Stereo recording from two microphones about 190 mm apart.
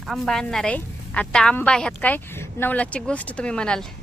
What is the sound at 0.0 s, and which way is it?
A woman's voice, centre (ahead or behind).